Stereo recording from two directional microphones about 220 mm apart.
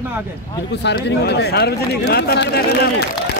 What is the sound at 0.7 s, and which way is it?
Speech, 50° left (ahead or behind).